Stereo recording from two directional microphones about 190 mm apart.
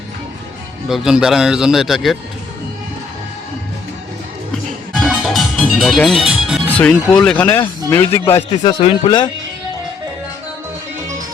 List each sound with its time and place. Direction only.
0.9 s speech: centre (ahead or behind)
4.5 s music: centre (ahead or behind)
7.9 s speech: 15° left (ahead or behind)
8.2 s speech: 25° left (ahead or behind)